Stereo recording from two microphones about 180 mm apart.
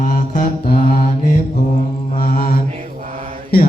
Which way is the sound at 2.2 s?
55° left (ahead or behind).